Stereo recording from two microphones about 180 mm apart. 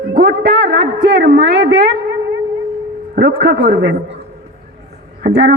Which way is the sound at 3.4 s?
60° right (ahead or behind).